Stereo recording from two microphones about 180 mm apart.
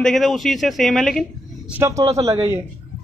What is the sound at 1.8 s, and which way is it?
Speech, 15° right (ahead or behind).